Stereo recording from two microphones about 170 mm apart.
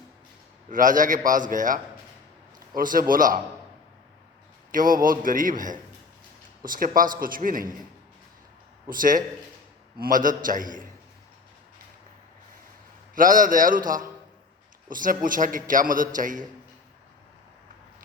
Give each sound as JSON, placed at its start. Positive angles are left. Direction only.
{"t": 0.7, "sound": "a man's voice", "side_deg": -50}
{"t": 4.7, "sound": "a man's voice", "side_deg": -55}
{"t": 8.9, "sound": "a man's voice", "side_deg": -55}
{"t": 13.1, "sound": "a man's voice", "side_deg": -50}